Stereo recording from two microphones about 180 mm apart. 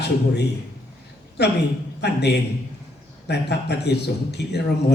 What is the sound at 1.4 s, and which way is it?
A man's voice, 65° left (ahead or behind).